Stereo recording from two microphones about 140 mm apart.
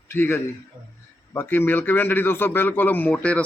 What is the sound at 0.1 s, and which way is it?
A man's voice, 15° left (ahead or behind).